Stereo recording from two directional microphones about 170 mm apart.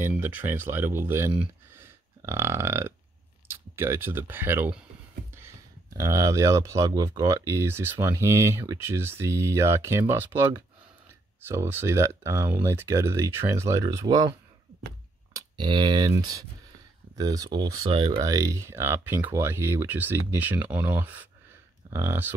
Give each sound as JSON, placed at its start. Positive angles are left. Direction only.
{"t": 0.0, "sound": "speech", "side_deg": -10}
{"t": 1.4, "sound": "burping", "side_deg": -15}
{"t": 3.4, "sound": "speech", "side_deg": -15}
{"t": 5.9, "sound": "speech", "side_deg": -20}
{"t": 15.3, "sound": "speech", "side_deg": -25}